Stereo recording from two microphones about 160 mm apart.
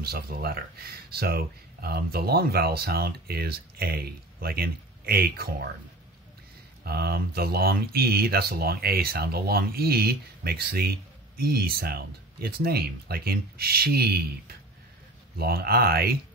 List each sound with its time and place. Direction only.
0.0 s speech: 75° right (ahead or behind)
6.8 s speech: 75° right (ahead or behind)